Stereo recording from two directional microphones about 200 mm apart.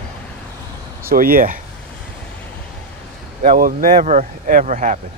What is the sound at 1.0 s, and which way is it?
Speech, 45° right (ahead or behind).